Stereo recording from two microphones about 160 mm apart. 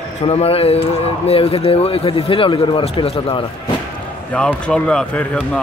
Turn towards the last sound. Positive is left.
turn(degrees=5)  # may be behind; listen again after turning